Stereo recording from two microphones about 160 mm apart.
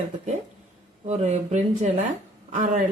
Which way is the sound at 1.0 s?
45° right (ahead or behind).